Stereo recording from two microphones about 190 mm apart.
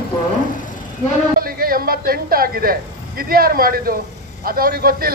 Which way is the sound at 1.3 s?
50° right (ahead or behind).